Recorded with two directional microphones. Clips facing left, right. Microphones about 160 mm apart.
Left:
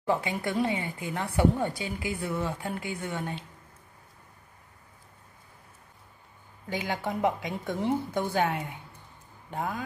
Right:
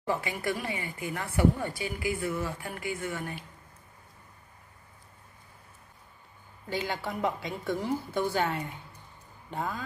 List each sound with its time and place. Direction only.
0.0 s speech: 20° left (ahead or behind)
6.7 s a woman's voice: 15° left (ahead or behind)